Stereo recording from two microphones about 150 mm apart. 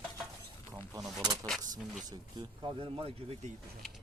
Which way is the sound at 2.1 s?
30° right (ahead or behind).